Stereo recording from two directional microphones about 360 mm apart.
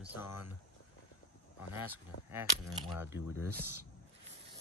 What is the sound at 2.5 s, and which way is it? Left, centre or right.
Speech, centre.